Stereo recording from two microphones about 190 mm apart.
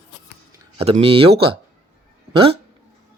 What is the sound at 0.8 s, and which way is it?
Speech, 30° right (ahead or behind).